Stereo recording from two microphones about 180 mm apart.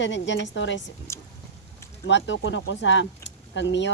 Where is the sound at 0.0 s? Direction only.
85° left.